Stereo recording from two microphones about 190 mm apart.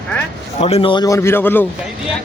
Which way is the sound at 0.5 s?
30° left (ahead or behind).